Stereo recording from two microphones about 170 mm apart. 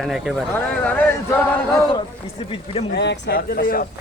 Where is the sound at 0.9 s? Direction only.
10° left (ahead or behind).